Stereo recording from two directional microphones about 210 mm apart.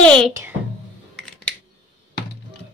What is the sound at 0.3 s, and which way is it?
Speech, 10° right (ahead or behind).